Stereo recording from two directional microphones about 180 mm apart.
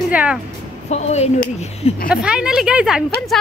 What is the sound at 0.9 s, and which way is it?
Speech, 35° left (ahead or behind).